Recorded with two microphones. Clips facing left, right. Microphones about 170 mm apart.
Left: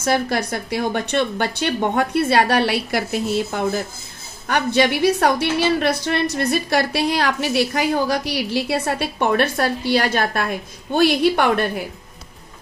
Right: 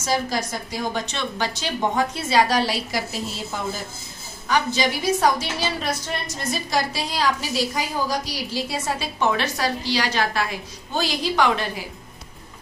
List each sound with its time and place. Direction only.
0.0 s a woman's voice: 60° left (ahead or behind)